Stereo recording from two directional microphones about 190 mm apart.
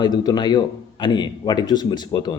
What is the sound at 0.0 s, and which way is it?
Speech, 20° left (ahead or behind).